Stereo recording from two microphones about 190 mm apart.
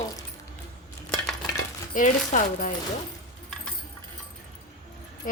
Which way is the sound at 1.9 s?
40° left (ahead or behind).